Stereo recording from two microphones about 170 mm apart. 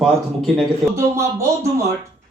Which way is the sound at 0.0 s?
Centre (ahead or behind).